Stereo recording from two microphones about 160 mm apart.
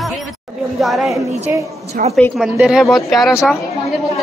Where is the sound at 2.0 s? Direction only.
60° right (ahead or behind).